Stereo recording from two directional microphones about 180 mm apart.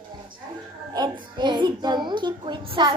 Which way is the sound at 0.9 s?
25° right (ahead or behind).